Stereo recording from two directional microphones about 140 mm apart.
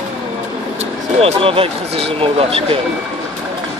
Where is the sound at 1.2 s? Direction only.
40° right (ahead or behind).